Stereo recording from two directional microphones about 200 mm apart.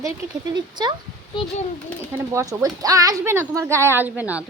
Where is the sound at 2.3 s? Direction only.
15° right (ahead or behind).